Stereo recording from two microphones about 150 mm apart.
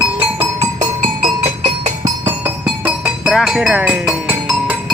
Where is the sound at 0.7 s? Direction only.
55° right (ahead or behind).